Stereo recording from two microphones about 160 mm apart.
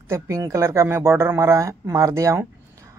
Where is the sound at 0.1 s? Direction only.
15° right (ahead or behind).